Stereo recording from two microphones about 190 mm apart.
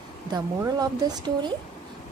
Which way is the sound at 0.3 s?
20° right (ahead or behind).